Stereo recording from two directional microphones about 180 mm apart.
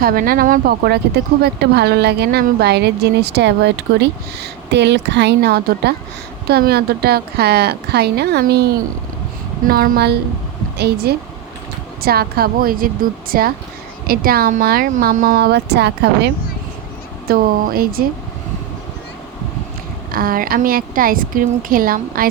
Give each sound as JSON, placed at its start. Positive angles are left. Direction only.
{"t": 0.0, "sound": "a woman's voice", "side_deg": -55}
{"t": 17.2, "sound": "speech", "side_deg": -55}
{"t": 20.1, "sound": "a woman's voice", "side_deg": -55}